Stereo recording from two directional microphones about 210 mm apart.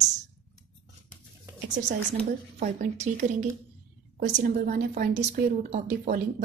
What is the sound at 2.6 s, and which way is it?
A woman's voice, 35° right (ahead or behind).